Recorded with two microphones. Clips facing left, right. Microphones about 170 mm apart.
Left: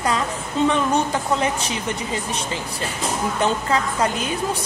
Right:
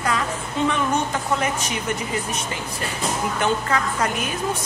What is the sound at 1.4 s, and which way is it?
Speech, 30° left (ahead or behind).